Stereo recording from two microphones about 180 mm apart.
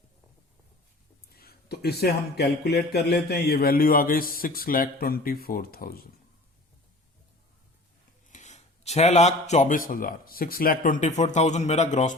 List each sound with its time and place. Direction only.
1.4 s speech: 60° left (ahead or behind)
8.3 s a man's voice: 40° left (ahead or behind)